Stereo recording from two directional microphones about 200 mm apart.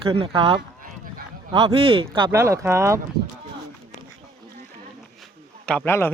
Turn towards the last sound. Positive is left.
turn(degrees=10)  # may be behind; listen again after turning